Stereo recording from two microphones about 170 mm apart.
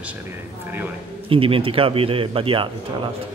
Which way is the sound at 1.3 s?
30° right (ahead or behind).